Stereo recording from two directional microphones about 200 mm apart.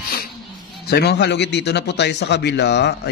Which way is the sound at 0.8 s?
55° left (ahead or behind).